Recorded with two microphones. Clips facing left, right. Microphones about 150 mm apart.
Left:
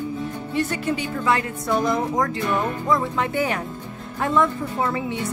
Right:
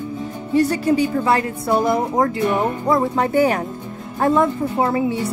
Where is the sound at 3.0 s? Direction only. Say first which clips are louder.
Right 7 dB; 40° right (ahead or behind).